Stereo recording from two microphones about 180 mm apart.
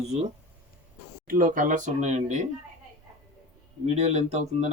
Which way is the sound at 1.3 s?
50° right (ahead or behind).